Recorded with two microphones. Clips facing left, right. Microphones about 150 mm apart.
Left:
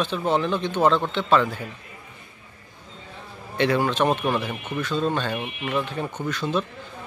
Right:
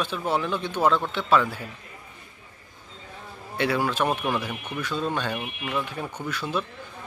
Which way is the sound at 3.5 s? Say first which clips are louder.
Left 3 dB; 5° right (ahead or behind).